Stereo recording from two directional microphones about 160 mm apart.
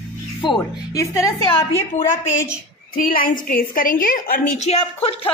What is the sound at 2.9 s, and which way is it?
A woman's voice, 60° left (ahead or behind).